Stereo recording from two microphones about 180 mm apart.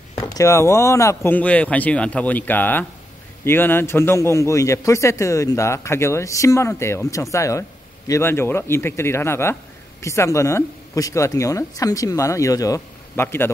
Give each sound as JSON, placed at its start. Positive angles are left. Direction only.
{"t": 0.3, "sound": "a man's voice", "side_deg": 15}